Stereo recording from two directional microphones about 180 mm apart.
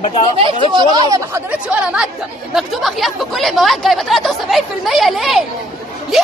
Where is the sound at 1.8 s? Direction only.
5° right (ahead or behind).